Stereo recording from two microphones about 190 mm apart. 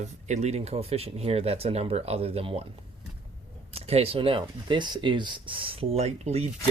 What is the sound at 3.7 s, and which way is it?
Speech, 30° right (ahead or behind).